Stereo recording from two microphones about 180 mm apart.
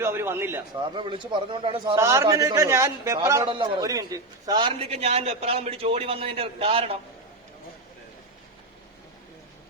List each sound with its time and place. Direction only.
0.0 s a man's voice: 15° right (ahead or behind)
0.7 s speech: 25° right (ahead or behind)
2.0 s a man's voice: 15° right (ahead or behind); by 6.9 s 30° right (ahead or behind)